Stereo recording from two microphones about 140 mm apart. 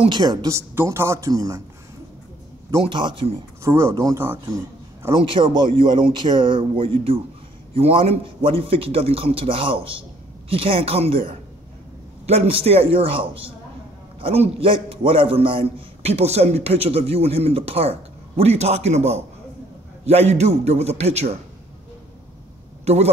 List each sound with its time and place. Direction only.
0.0 s speech: 30° right (ahead or behind)
2.8 s a man's voice: 35° right (ahead or behind)
3.6 s speech: 20° right (ahead or behind)
5.1 s a man's voice: 35° right (ahead or behind)
12.3 s a man's voice: 45° right (ahead or behind)
22.9 s a man's voice: 50° right (ahead or behind)